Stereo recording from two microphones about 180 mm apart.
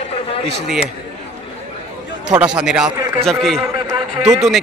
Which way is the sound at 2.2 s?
5° right (ahead or behind).